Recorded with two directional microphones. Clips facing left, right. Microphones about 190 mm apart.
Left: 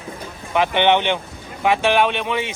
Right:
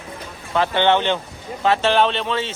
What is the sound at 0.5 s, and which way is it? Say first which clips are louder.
Speech: left 1 dB; 15° left (ahead or behind).